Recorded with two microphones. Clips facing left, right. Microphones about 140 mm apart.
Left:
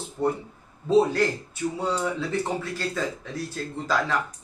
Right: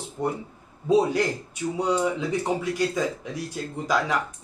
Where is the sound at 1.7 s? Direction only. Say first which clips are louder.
Right 4 dB; 15° right (ahead or behind).